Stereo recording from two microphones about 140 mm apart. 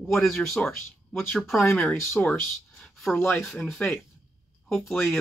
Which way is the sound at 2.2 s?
5° left (ahead or behind).